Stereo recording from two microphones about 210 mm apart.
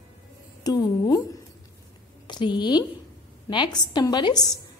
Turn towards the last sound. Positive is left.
turn(degrees=20)  # may be behind; listen again after turning